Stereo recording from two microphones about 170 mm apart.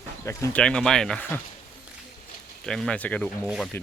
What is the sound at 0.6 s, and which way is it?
Speech, 5° left (ahead or behind).